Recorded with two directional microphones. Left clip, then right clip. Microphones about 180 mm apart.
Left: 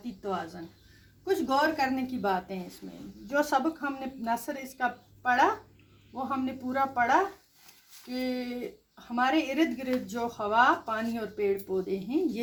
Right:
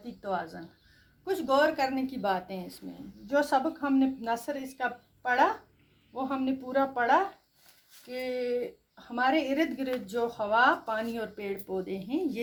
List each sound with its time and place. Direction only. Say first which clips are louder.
0.2 s a woman's voice: right 1 dB; 40° right (ahead or behind)